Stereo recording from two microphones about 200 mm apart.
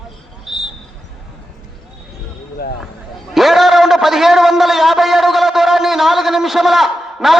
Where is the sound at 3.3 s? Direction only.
Centre (ahead or behind).